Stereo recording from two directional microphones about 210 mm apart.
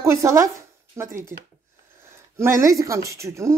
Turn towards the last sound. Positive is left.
turn(degrees=-15)  # may be behind; listen again after turning